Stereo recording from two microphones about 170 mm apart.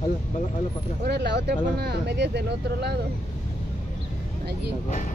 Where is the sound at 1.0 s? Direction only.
85° right.